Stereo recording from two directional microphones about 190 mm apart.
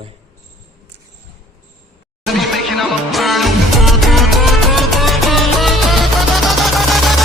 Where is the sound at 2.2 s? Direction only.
Centre (ahead or behind).